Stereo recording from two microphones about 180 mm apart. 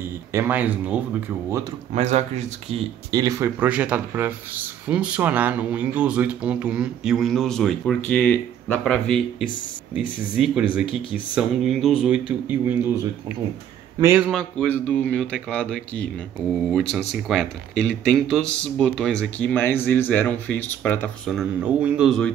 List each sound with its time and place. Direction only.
0.3 s speech: 10° right (ahead or behind)
2.0 s speech: 40° right (ahead or behind)
3.1 s speech: 20° right (ahead or behind); by 9.2 s 5° left (ahead or behind)
10.3 s speech: 5° right (ahead or behind)
13.9 s speech: 10° right (ahead or behind)
14.3 s speech: 5° left (ahead or behind)
17.3 s speech: 5° left (ahead or behind)
21.4 s speech: 5° right (ahead or behind)